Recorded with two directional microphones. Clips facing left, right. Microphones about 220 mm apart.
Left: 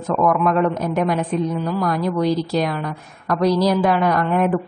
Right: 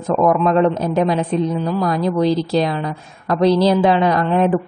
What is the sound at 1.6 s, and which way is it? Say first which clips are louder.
Speech: right 2 dB; 15° right (ahead or behind).